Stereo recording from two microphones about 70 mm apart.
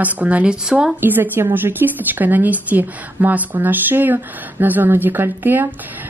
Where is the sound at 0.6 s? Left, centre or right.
Centre.